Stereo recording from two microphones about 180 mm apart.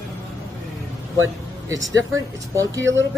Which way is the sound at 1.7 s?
20° right (ahead or behind).